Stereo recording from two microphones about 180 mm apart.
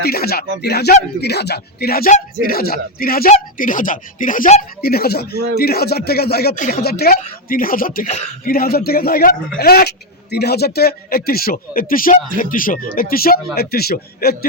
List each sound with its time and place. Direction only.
0.0 s speech: 60° left (ahead or behind)
4.8 s speech: 60° left (ahead or behind)